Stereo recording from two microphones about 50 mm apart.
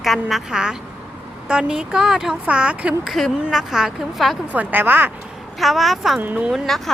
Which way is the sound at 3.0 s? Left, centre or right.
Centre.